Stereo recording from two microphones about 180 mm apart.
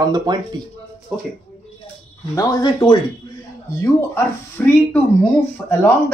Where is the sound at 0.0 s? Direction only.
20° right (ahead or behind).